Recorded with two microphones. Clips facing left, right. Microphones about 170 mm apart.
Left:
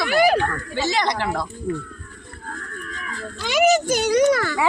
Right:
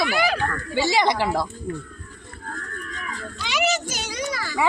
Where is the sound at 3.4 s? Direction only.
50° left (ahead or behind).